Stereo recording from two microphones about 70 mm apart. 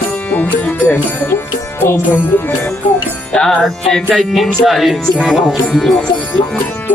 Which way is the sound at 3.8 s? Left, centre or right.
Centre.